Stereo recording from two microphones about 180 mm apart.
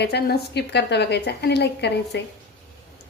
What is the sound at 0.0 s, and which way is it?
A woman's voice, 65° left (ahead or behind).